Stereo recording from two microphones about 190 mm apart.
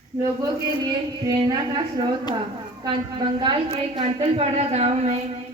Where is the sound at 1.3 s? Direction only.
20° right (ahead or behind).